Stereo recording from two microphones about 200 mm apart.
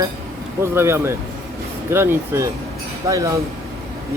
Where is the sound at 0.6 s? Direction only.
10° right (ahead or behind).